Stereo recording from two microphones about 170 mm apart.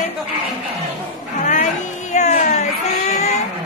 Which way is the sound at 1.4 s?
45° left (ahead or behind).